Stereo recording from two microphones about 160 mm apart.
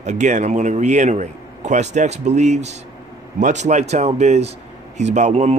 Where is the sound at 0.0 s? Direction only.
50° right (ahead or behind).